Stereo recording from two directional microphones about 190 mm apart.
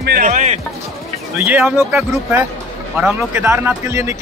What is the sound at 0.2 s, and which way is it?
Music, 40° right (ahead or behind).